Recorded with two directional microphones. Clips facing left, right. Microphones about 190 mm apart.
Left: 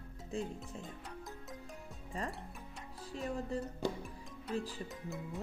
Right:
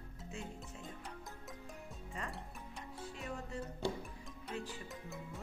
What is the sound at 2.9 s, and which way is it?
Music, 35° left (ahead or behind).